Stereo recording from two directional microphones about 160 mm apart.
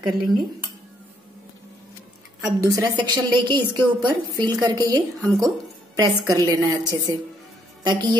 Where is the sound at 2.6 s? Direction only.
25° right (ahead or behind).